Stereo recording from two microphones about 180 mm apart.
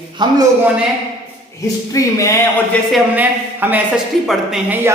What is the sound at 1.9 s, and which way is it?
Speech, 15° left (ahead or behind).